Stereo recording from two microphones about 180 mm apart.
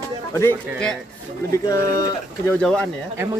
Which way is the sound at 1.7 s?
20° left (ahead or behind).